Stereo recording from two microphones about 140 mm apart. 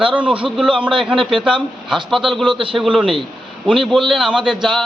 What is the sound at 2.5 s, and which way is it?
Speech, 40° right (ahead or behind).